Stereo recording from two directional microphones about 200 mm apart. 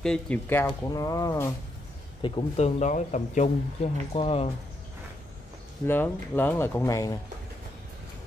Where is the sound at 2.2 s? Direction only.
25° left (ahead or behind).